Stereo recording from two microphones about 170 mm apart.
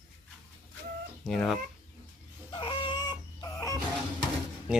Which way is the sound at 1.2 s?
5° left (ahead or behind).